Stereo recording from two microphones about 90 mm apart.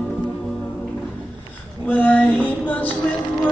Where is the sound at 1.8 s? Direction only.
20° left (ahead or behind).